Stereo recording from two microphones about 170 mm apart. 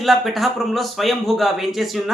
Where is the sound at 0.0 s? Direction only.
Centre (ahead or behind).